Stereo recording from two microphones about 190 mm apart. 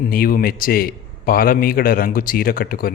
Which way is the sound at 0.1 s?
50° left (ahead or behind).